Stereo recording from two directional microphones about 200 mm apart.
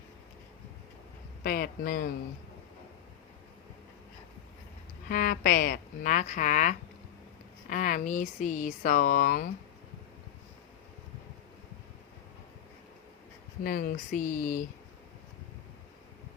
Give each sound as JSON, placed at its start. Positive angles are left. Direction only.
{"t": 1.5, "sound": "speech", "side_deg": 45}
{"t": 5.0, "sound": "speech", "side_deg": 45}
{"t": 13.7, "sound": "speech", "side_deg": 45}